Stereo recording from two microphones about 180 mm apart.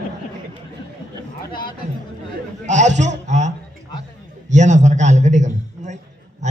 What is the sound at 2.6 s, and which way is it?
A man's voice, 40° right (ahead or behind).